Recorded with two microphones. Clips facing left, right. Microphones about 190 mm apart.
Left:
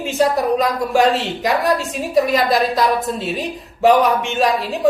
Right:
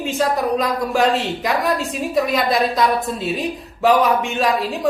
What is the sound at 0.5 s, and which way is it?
A woman's voice, centre (ahead or behind).